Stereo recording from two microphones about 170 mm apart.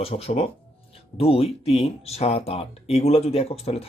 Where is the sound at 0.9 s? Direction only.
35° left (ahead or behind).